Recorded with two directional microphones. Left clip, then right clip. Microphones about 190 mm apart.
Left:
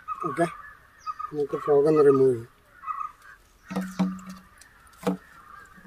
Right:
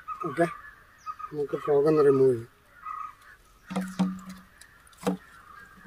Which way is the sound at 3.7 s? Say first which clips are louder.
Left 1 dB; 20° right (ahead or behind).